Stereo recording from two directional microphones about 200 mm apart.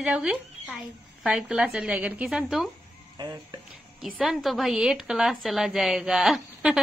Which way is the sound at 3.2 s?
20° right (ahead or behind).